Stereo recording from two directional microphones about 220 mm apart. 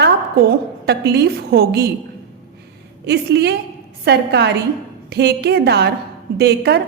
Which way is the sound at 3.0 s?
50° right (ahead or behind).